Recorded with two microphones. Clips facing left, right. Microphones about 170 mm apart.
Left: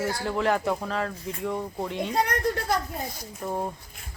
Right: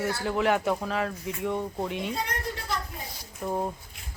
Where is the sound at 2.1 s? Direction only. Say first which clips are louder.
Left 6 dB; 70° left (ahead or behind).